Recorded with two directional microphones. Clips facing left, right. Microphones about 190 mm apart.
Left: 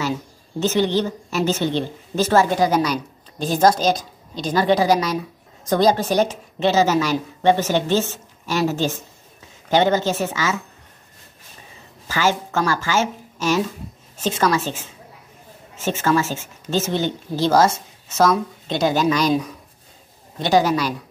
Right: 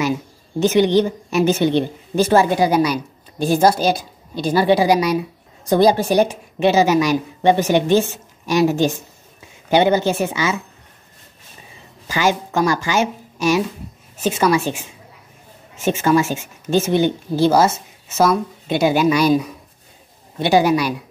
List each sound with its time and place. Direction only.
0.0 s a woman's voice: 15° right (ahead or behind)
12.1 s a woman's voice: 15° right (ahead or behind)